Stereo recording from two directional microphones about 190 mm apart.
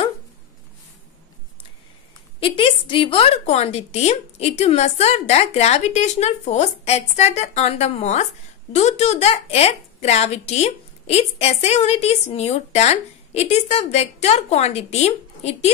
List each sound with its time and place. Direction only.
2.4 s a woman's voice: 25° left (ahead or behind)